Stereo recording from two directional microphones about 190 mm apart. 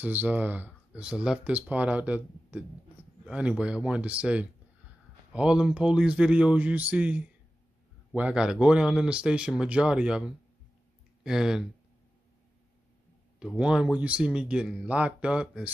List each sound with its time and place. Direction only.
0.0 s a man's voice: 10° right (ahead or behind)
13.6 s a man's voice: 5° right (ahead or behind)